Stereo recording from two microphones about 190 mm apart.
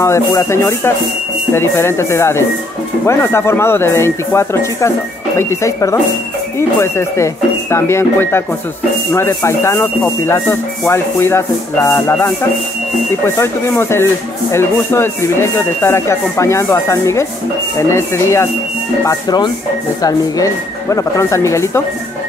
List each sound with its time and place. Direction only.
0.0 s speech: 15° left (ahead or behind)
13.4 s speech: 15° left (ahead or behind)